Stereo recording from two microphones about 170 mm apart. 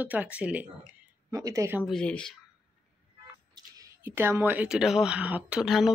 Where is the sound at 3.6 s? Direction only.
25° right (ahead or behind).